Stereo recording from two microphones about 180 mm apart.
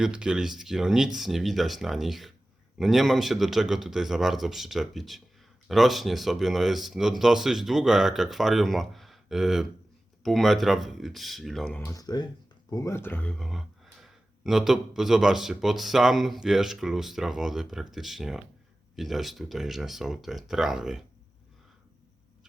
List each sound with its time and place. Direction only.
0.0 s speech: 5° right (ahead or behind)
11.8 s speech: 20° left (ahead or behind); by 21.0 s centre (ahead or behind)